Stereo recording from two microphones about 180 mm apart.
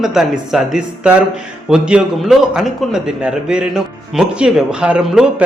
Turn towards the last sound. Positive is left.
turn(degrees=-5)  # may be behind; listen again after turning